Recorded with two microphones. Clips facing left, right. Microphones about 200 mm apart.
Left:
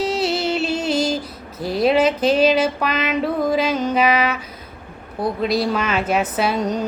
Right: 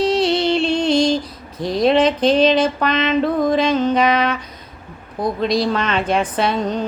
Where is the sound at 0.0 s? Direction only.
5° left (ahead or behind).